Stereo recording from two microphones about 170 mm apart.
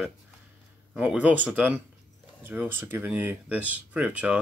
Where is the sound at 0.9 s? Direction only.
10° right (ahead or behind).